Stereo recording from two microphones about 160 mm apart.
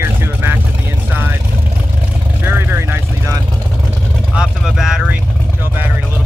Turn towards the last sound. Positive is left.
turn(degrees=-5)  # may be behind; listen again after turning